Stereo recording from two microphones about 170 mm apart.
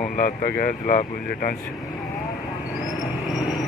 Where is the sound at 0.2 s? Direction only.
55° left (ahead or behind).